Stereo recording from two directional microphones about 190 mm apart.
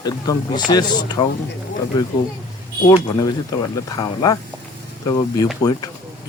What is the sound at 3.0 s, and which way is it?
Speech, 20° left (ahead or behind).